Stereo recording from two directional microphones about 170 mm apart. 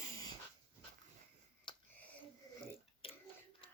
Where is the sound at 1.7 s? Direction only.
30° left (ahead or behind).